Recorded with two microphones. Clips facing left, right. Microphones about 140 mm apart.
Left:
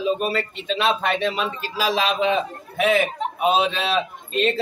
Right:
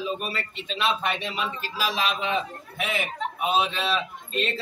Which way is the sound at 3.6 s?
90° left.